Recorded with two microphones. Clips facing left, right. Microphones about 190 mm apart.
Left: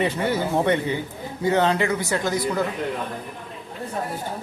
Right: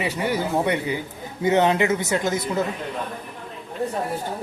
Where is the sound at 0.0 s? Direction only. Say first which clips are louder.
Left 2 dB; 10° right (ahead or behind).